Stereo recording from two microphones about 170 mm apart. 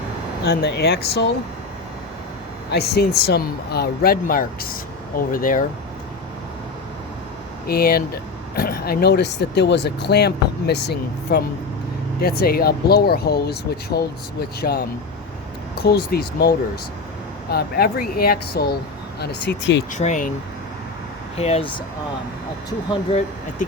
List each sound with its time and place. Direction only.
0.4 s speech: 65° left (ahead or behind)
2.6 s speech: 70° left (ahead or behind); by 5.6 s 55° left (ahead or behind)
7.7 s speech: 65° left (ahead or behind)
19.2 s speech: 85° left
19.9 s speech: 45° left (ahead or behind)
21.3 s speech: 35° left (ahead or behind)